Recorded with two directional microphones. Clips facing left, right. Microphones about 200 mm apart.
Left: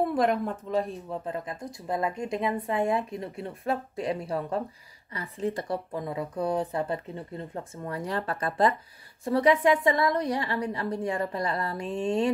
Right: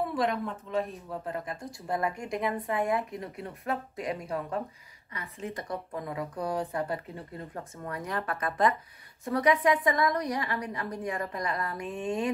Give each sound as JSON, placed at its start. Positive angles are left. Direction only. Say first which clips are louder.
{"t": 0.1, "sound": "speech", "louder": "left 4 dB", "side_deg": 50}
{"t": 0.7, "sound": "a man's voice", "louder": "left 3 dB", "side_deg": 35}
{"t": 1.2, "sound": "a woman's voice", "louder": "left 2 dB", "side_deg": 25}